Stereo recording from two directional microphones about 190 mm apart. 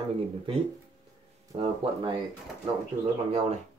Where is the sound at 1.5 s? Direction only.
25° right (ahead or behind).